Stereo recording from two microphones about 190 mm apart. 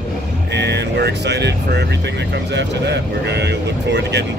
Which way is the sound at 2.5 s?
65° right (ahead or behind).